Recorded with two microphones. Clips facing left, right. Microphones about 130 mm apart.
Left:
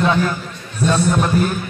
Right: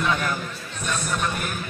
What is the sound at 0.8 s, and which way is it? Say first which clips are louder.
Speech: left 12 dB; 30° left (ahead or behind).